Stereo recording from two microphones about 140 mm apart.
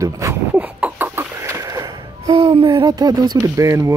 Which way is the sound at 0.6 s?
10° right (ahead or behind).